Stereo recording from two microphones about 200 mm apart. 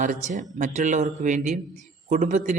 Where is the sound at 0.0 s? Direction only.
40° right (ahead or behind).